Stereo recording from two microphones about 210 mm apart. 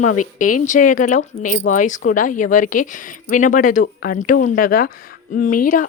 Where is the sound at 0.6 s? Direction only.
40° left (ahead or behind).